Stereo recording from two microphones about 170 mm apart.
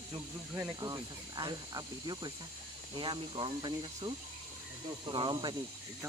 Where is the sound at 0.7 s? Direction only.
25° right (ahead or behind).